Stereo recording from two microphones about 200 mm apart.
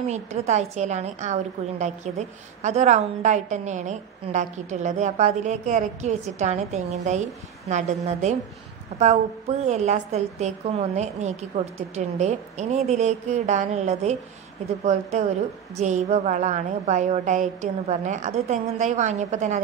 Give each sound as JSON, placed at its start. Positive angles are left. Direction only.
{"t": 0.1, "sound": "a woman's voice", "side_deg": -35}
{"t": 9.7, "sound": "a woman's voice", "side_deg": -35}